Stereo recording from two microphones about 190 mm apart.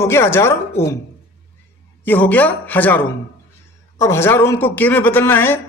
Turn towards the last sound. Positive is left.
turn(degrees=10)  # may be behind; listen again after turning